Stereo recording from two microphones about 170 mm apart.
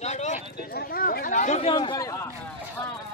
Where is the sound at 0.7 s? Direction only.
65° left (ahead or behind); by 1.7 s 40° left (ahead or behind).